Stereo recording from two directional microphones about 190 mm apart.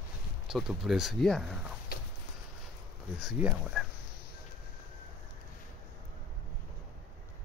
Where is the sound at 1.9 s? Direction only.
50° left (ahead or behind).